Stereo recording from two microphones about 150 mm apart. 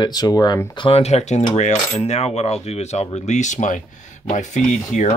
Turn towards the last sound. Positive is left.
turn(degrees=55)  # may be behind; listen again after turning